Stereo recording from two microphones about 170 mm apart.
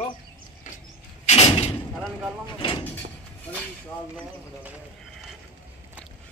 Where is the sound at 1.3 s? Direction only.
40° left (ahead or behind).